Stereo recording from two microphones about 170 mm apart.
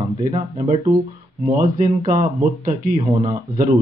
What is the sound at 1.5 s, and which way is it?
Speech, 45° right (ahead or behind).